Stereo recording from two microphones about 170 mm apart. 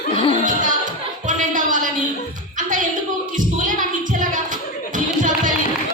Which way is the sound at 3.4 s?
50° right (ahead or behind).